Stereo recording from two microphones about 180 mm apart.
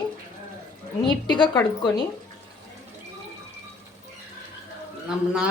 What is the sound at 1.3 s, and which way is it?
Speech, 25° left (ahead or behind).